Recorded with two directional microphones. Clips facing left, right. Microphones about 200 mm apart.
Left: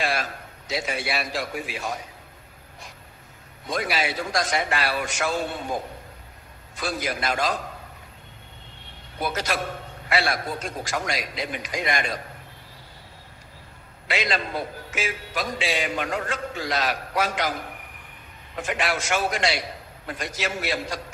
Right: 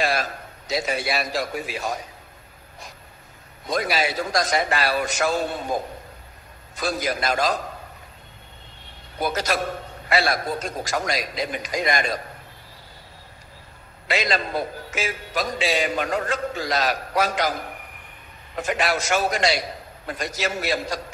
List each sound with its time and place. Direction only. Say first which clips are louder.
0.0 s a man's voice: right 3 dB; 40° right (ahead or behind)
3.6 s a man's voice: right 3 dB; 40° right (ahead or behind)
6.8 s a man's voice: right 3 dB; 40° right (ahead or behind)
9.2 s a man's voice: right 3 dB; 40° right (ahead or behind)
14.0 s a man's voice: right 3 dB; 40° right (ahead or behind)
18.6 s a man's voice: right 3 dB; 40° right (ahead or behind)